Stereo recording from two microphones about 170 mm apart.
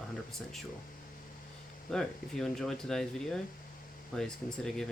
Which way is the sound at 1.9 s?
5° left (ahead or behind).